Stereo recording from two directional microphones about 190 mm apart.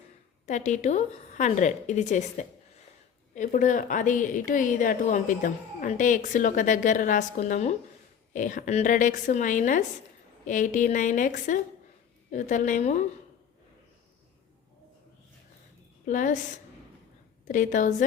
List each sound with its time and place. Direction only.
0.4 s a woman's voice: 40° left (ahead or behind)
16.0 s a woman's voice: 40° left (ahead or behind)